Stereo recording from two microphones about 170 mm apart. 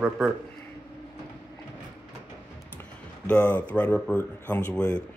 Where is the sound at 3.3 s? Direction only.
10° left (ahead or behind).